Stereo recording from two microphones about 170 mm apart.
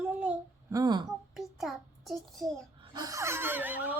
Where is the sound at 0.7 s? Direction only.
25° right (ahead or behind).